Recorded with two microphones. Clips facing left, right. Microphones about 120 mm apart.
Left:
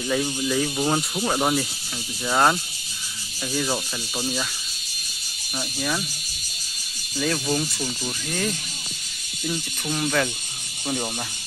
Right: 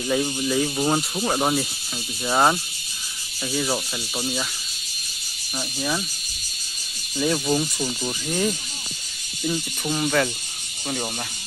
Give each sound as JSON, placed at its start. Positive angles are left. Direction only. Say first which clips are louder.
{"t": 0.0, "sound": "speech", "louder": "right 1 dB", "side_deg": -10}
{"t": 5.8, "sound": "speech", "louder": "right 1 dB", "side_deg": -5}
{"t": 7.2, "sound": "speech", "louder": "right 2 dB", "side_deg": -15}